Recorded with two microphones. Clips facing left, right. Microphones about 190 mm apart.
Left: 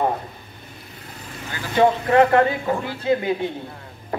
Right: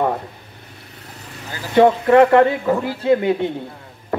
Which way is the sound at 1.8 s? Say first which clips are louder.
Right 4 dB; 60° right (ahead or behind).